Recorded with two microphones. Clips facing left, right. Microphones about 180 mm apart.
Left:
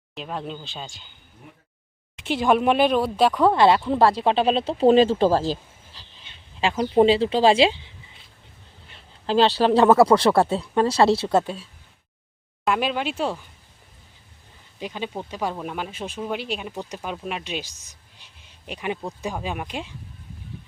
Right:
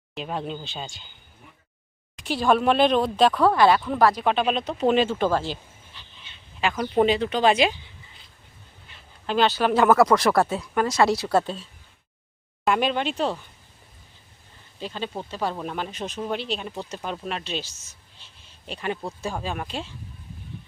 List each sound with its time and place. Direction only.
0.1 s speech: centre (ahead or behind)
2.2 s speech: 20° left (ahead or behind)
3.4 s speech: 25° left (ahead or behind)
9.2 s speech: 30° left (ahead or behind)
12.6 s speech: centre (ahead or behind)
14.8 s speech: 15° left (ahead or behind)